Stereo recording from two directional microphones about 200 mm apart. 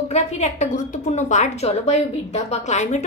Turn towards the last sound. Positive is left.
turn(degrees=35)  # may be behind; listen again after turning